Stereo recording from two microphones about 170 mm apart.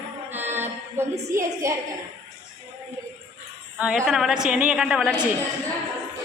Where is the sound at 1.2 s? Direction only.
15° right (ahead or behind).